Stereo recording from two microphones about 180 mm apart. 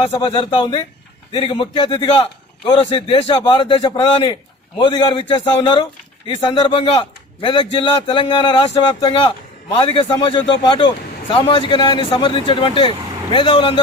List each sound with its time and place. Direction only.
0.0 s a man's voice: 35° left (ahead or behind)
0.3 s a man's voice: 25° left (ahead or behind)